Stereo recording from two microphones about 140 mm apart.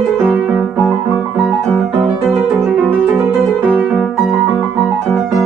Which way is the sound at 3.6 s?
Centre (ahead or behind).